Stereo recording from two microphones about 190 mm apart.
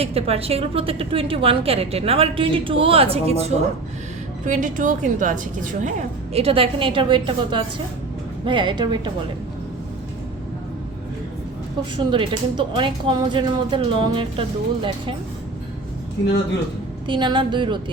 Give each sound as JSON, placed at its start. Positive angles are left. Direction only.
{"t": 0.0, "sound": "a woman's voice", "side_deg": -30}
{"t": 4.4, "sound": "a woman's voice", "side_deg": -40}
{"t": 6.3, "sound": "a woman's voice", "side_deg": -30}
{"t": 11.9, "sound": "a woman's voice", "side_deg": -25}
{"t": 17.1, "sound": "a woman's voice", "side_deg": -25}